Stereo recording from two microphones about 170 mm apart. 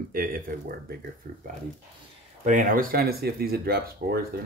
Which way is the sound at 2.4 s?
50° right (ahead or behind).